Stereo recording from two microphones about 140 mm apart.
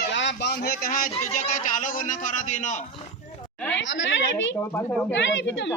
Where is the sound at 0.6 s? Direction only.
90° left; by 2.8 s 60° left (ahead or behind).